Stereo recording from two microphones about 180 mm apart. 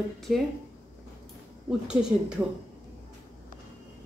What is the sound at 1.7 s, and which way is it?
Speech, 5° right (ahead or behind).